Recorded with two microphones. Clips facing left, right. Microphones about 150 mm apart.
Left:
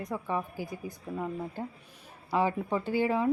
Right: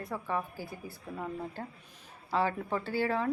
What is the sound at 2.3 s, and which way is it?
A woman's voice, 15° left (ahead or behind).